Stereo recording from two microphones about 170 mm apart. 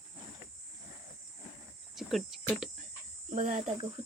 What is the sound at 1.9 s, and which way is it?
Cricket, centre (ahead or behind).